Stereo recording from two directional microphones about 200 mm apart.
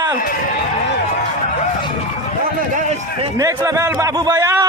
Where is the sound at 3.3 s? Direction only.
15° right (ahead or behind).